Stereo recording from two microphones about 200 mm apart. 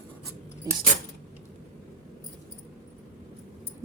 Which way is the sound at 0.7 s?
20° right (ahead or behind).